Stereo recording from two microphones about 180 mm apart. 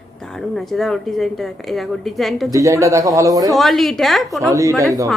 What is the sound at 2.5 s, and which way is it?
A man's voice, 15° right (ahead or behind).